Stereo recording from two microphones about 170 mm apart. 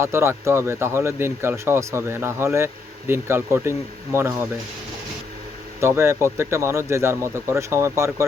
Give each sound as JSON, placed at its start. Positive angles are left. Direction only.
{"t": 0.0, "sound": "speech", "side_deg": -15}
{"t": 5.8, "sound": "speech", "side_deg": -15}